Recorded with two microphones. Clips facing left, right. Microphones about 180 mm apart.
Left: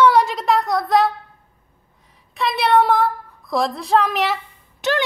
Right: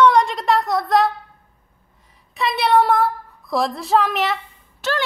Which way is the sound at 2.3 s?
Centre (ahead or behind).